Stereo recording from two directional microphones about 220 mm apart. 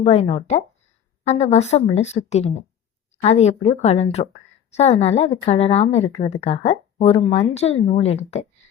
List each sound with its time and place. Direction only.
0.0 s a woman's voice: 30° left (ahead or behind)